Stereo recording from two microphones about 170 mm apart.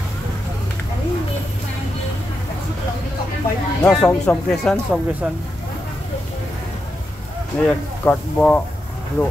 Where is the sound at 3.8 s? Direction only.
5° left (ahead or behind).